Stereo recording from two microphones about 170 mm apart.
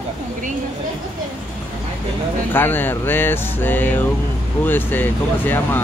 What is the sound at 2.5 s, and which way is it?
Speech, 10° left (ahead or behind).